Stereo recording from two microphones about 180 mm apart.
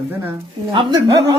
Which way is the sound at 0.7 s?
30° right (ahead or behind).